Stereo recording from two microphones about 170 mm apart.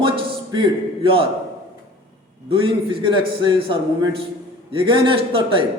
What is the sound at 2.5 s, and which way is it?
A man's voice, 30° right (ahead or behind).